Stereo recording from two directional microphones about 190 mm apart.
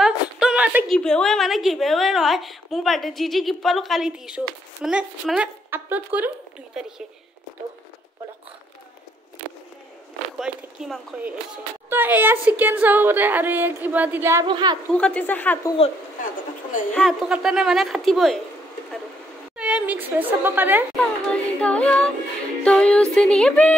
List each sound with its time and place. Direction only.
0.0 s a sound: 5° right (ahead or behind)
0.9 s a woman's voice: 5° left (ahead or behind)
10.4 s a woman's voice: centre (ahead or behind)
14.4 s a woman's voice: 25° right (ahead or behind)
14.9 s music: 5° left (ahead or behind)
16.9 s a woman's voice: centre (ahead or behind)
19.5 s a woman's voice: 5° right (ahead or behind)
21.0 s music: 5° left (ahead or behind)
22.6 s a woman's voice: 5° left (ahead or behind)